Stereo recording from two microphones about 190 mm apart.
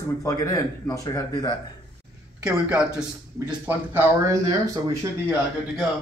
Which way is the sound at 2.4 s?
5° right (ahead or behind).